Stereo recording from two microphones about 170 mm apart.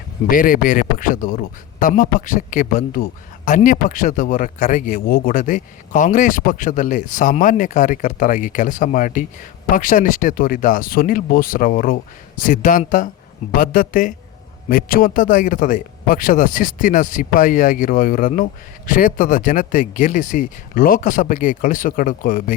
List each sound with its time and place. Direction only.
0.3 s speech: 55° left (ahead or behind)